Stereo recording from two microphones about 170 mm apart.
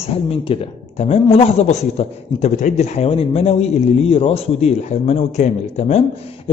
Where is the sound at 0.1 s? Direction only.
35° left (ahead or behind).